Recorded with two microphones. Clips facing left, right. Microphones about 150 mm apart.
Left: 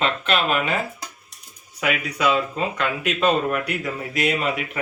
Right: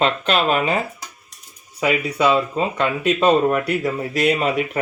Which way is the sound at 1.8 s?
30° right (ahead or behind).